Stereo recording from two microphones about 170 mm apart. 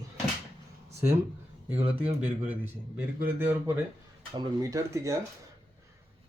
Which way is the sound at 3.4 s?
10° right (ahead or behind).